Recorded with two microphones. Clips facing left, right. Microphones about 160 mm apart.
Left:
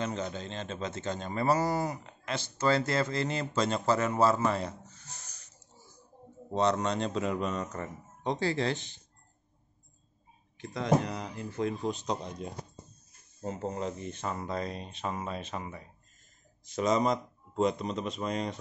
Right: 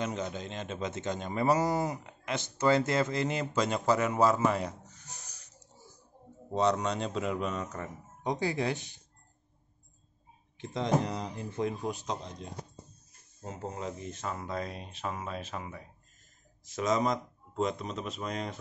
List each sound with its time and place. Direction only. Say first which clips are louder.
0.0 s speech: even; 10° right (ahead or behind)
6.5 s speech: even; 10° right (ahead or behind)
10.6 s speech: left 1 dB; 20° right (ahead or behind)
13.4 s speech: left 4 dB; 5° right (ahead or behind)